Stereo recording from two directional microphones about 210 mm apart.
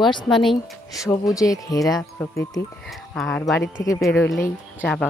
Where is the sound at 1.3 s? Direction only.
15° left (ahead or behind).